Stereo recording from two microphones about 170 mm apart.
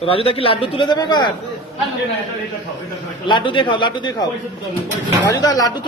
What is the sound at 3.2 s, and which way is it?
A man's voice, 30° left (ahead or behind).